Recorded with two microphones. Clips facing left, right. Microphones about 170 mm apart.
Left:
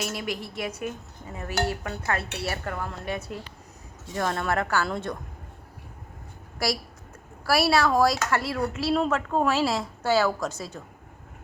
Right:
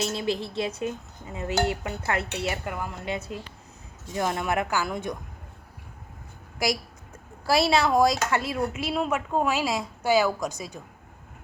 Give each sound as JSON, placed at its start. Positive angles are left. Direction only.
{"t": 0.0, "sound": "speech", "side_deg": -25}
{"t": 7.4, "sound": "speech", "side_deg": -20}